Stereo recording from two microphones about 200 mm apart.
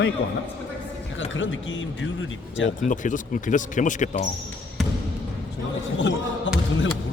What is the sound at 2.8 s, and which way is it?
Speech, 40° left (ahead or behind).